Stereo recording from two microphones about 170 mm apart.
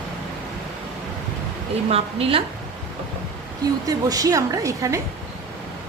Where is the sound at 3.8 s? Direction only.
20° right (ahead or behind).